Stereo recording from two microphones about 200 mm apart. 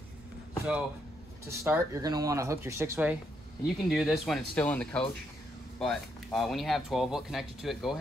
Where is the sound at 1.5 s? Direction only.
15° right (ahead or behind).